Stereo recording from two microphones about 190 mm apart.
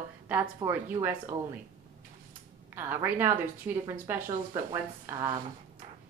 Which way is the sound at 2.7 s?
10° right (ahead or behind).